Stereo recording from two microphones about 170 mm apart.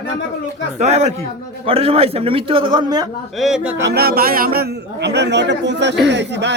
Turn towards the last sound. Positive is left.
turn(degrees=-90)